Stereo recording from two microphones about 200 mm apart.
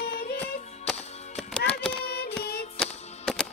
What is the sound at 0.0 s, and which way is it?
Music, 50° left (ahead or behind).